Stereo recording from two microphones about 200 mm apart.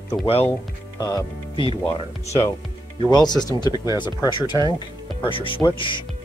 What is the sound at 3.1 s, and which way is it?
Speech, 20° left (ahead or behind).